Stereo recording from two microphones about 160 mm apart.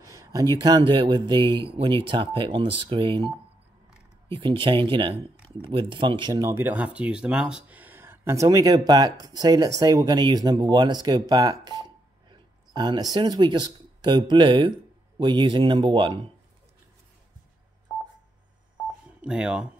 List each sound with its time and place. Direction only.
0.0 s speech: 20° right (ahead or behind)
19.2 s speech: 5° right (ahead or behind)